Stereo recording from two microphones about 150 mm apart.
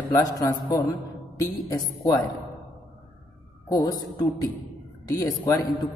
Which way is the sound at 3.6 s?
25° left (ahead or behind).